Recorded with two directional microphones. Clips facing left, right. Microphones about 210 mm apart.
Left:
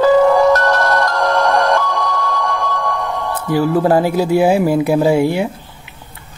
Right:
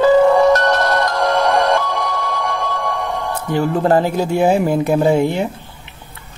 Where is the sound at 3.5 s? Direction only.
5° left (ahead or behind).